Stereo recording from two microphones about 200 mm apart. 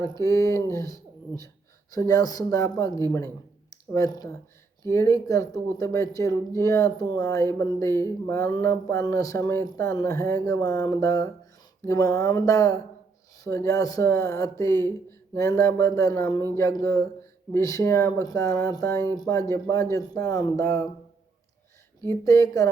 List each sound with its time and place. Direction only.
0.0 s speech: 15° left (ahead or behind)
3.7 s a sound: 15° left (ahead or behind)
4.8 s speech: 15° left (ahead or behind)
22.0 s speech: 15° left (ahead or behind)